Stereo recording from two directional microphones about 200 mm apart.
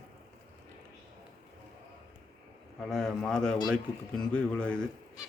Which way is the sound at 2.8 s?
Centre (ahead or behind).